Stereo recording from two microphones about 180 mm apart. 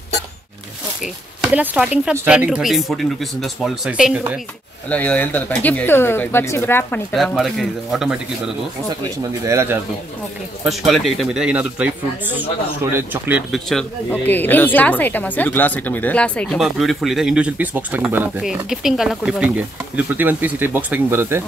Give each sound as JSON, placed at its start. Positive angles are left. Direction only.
{"t": 1.4, "sound": "speech", "side_deg": -10}
{"t": 4.8, "sound": "speech", "side_deg": 10}
{"t": 9.4, "sound": "speech", "side_deg": -15}
{"t": 10.6, "sound": "speech", "side_deg": 0}
{"t": 13.5, "sound": "speech", "side_deg": 0}